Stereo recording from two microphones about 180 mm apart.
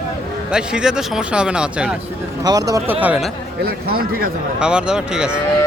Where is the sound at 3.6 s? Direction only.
55° right (ahead or behind).